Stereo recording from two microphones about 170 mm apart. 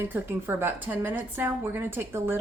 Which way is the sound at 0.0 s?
15° right (ahead or behind).